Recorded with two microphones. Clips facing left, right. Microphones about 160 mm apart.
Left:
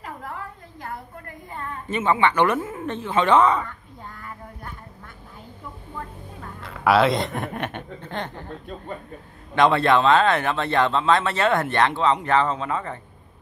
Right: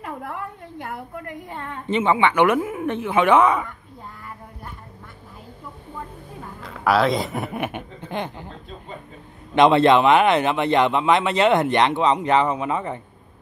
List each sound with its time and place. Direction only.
0.0 s a sound: 65° right (ahead or behind)
1.9 s speech: 20° right (ahead or behind)
5.9 s a woman's voice: 5° right (ahead or behind)
9.6 s speech: 20° right (ahead or behind)